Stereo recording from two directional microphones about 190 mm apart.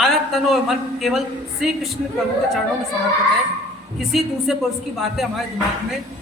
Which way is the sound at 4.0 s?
Centre (ahead or behind).